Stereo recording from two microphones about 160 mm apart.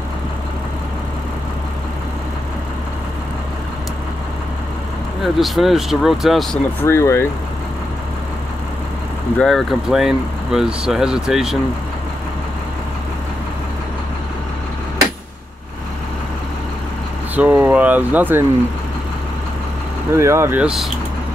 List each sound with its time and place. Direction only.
5.2 s speech: centre (ahead or behind)
6.8 s speech: 15° left (ahead or behind)
9.4 s speech: centre (ahead or behind)
17.4 s speech: 10° right (ahead or behind)
20.2 s speech: 15° right (ahead or behind)
20.6 s speech: centre (ahead or behind)